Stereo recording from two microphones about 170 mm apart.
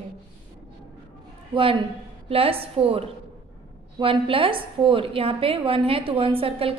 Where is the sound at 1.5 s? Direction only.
30° right (ahead or behind).